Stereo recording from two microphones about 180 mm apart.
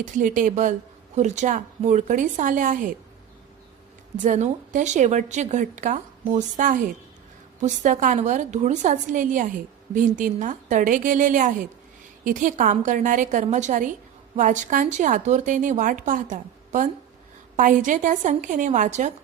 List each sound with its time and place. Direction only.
0.0 s a woman's voice: 45° right (ahead or behind)
4.2 s a woman's voice: 40° right (ahead or behind)